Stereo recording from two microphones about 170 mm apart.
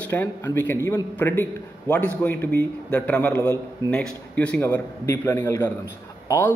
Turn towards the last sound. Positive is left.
turn(degrees=15)  # may be behind; listen again after turning